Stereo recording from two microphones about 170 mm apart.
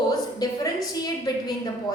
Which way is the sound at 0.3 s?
25° left (ahead or behind).